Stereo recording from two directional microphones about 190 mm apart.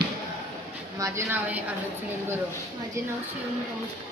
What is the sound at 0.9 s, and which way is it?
Speech, 15° right (ahead or behind).